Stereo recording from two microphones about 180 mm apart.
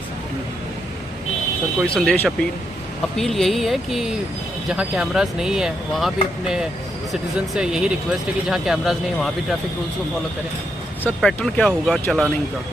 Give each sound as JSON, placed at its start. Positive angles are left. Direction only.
{"t": 1.9, "sound": "speech", "side_deg": 5}
{"t": 11.2, "sound": "speech", "side_deg": 5}